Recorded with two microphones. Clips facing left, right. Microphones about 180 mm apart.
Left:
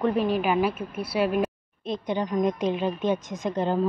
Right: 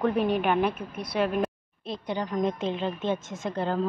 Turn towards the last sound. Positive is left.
turn(degrees=15)  # may be behind; listen again after turning